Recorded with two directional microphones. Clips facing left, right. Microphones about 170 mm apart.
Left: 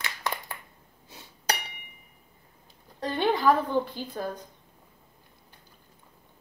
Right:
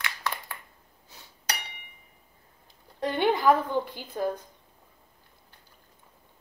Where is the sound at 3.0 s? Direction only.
20° right (ahead or behind).